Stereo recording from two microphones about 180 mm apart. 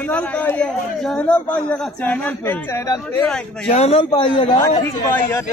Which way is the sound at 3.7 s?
35° left (ahead or behind).